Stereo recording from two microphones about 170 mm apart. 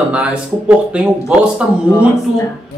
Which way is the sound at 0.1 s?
5° right (ahead or behind).